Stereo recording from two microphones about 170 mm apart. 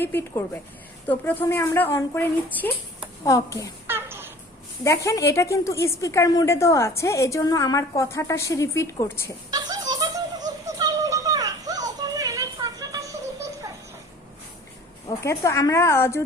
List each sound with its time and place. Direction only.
0.0 s a woman's voice: 15° left (ahead or behind)
3.8 s a sound: 15° right (ahead or behind)
4.8 s a woman's voice: 20° left (ahead or behind)
9.5 s a sound: 25° right (ahead or behind)
9.9 s music: 25° right (ahead or behind)
15.0 s a woman's voice: 15° left (ahead or behind)